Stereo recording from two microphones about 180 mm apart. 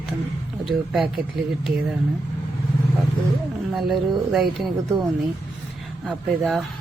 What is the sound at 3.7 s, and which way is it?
Speech, centre (ahead or behind).